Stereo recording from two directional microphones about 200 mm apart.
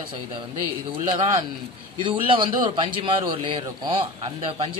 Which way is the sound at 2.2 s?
25° right (ahead or behind).